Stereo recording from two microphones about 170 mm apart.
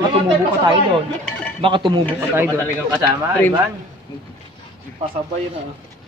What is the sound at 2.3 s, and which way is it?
Speech, 15° right (ahead or behind).